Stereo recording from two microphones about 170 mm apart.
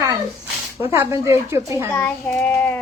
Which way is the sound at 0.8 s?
15° right (ahead or behind).